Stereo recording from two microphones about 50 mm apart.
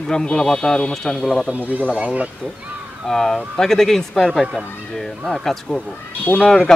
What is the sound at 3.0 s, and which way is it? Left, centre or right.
Speech, centre.